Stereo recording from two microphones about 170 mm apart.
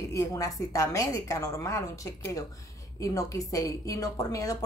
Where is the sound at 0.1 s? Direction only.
20° left (ahead or behind).